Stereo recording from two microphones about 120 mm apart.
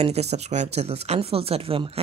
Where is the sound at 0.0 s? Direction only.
65° right (ahead or behind).